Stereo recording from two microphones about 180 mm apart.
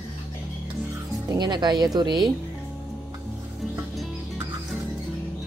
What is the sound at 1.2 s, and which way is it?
A woman's voice, 25° right (ahead or behind).